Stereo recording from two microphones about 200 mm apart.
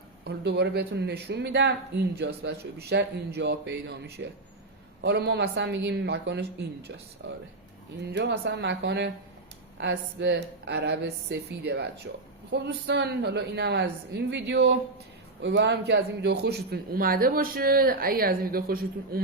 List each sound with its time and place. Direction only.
0.3 s a man's voice: 55° right (ahead or behind)